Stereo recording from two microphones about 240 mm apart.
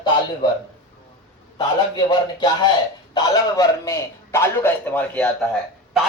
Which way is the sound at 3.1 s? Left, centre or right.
Centre.